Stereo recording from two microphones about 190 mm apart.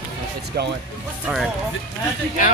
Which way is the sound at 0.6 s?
55° right (ahead or behind).